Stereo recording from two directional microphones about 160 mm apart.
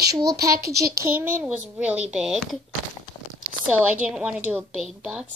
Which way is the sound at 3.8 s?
5° right (ahead or behind).